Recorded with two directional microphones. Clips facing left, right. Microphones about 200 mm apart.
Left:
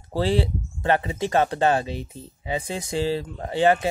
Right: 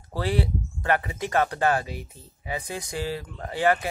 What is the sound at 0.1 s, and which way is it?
Speech, 25° left (ahead or behind).